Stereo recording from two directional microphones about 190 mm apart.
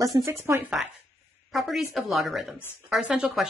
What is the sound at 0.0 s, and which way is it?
Speech, 15° right (ahead or behind).